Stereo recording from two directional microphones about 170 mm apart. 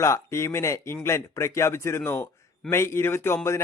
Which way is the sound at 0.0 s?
15° left (ahead or behind).